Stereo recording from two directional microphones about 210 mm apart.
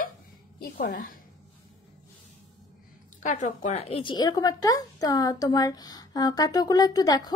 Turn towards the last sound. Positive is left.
turn(degrees=15)  # may be behind; listen again after turning